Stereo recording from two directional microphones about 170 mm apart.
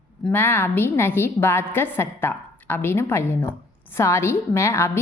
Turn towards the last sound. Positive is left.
turn(degrees=15)  # may be behind; listen again after turning